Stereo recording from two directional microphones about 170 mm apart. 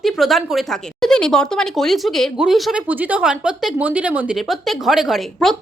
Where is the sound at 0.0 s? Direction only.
Centre (ahead or behind).